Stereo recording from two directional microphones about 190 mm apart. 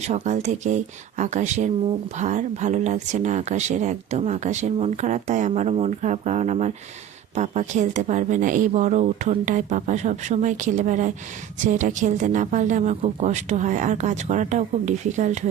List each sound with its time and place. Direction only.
0.0 s speech: 35° right (ahead or behind)